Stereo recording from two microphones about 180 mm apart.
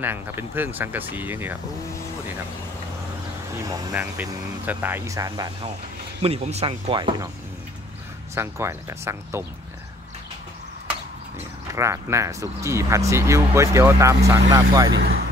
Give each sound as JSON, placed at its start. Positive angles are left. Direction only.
{"t": 0.0, "sound": "speech", "side_deg": -10}
{"t": 3.9, "sound": "speech", "side_deg": -10}
{"t": 6.2, "sound": "speech", "side_deg": -35}
{"t": 8.4, "sound": "speech", "side_deg": -15}
{"t": 11.7, "sound": "speech", "side_deg": -15}